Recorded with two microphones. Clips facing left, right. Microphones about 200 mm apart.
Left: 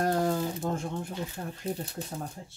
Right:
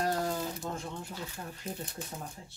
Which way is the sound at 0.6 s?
45° left (ahead or behind).